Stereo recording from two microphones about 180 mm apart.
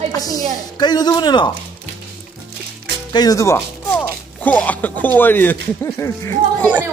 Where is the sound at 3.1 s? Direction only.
20° left (ahead or behind).